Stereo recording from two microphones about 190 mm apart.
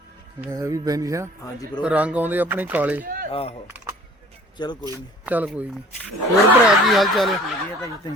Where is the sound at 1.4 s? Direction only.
20° left (ahead or behind).